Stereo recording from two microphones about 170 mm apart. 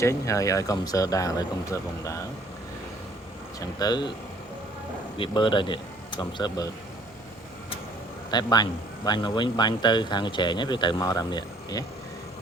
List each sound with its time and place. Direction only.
0.0 s a man's voice: 15° left (ahead or behind)
3.8 s a man's voice: 25° left (ahead or behind)
5.1 s speech: 30° left (ahead or behind)
8.3 s a man's voice: 25° left (ahead or behind)